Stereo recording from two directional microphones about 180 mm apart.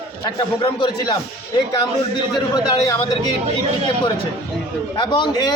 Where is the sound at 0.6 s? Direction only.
25° left (ahead or behind).